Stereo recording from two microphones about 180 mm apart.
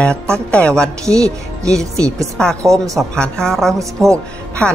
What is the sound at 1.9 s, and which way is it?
Speech, 15° right (ahead or behind).